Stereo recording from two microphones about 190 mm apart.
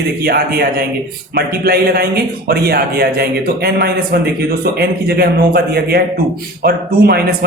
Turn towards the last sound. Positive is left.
turn(degrees=-55)  # may be behind; listen again after turning